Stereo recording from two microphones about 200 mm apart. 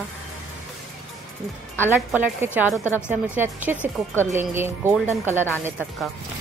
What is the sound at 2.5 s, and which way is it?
Speech, 5° right (ahead or behind).